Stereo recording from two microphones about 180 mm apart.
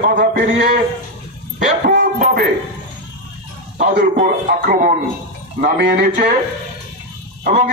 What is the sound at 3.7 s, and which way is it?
A man's voice, 50° right (ahead or behind).